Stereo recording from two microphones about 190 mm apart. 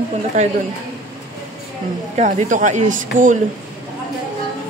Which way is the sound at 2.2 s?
40° right (ahead or behind).